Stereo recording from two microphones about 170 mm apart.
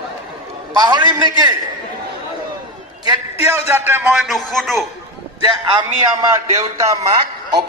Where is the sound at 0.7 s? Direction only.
25° right (ahead or behind).